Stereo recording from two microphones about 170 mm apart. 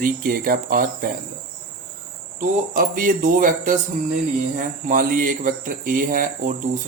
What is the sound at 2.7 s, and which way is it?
Speech, 55° right (ahead or behind).